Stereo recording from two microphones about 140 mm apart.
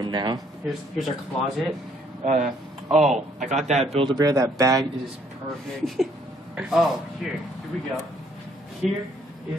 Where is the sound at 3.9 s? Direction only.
30° right (ahead or behind).